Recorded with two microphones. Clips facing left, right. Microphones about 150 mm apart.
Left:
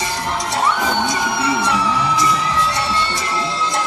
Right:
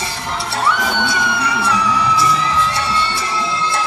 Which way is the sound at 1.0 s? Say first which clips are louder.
Even; 30° left (ahead or behind).